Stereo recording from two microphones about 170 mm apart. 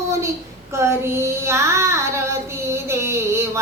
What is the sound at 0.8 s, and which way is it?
Child singing, 15° right (ahead or behind).